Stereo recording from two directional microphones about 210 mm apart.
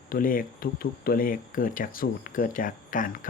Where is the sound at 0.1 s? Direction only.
40° left (ahead or behind).